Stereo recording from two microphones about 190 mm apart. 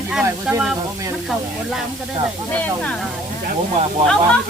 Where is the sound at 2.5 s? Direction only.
5° left (ahead or behind).